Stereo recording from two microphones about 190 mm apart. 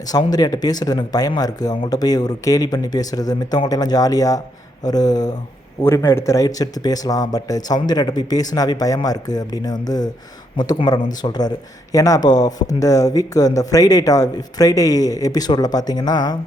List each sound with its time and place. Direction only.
0.1 s speech: 20° left (ahead or behind)